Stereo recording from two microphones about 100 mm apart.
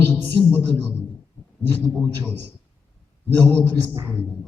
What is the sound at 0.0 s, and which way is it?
A man's voice, 20° left (ahead or behind).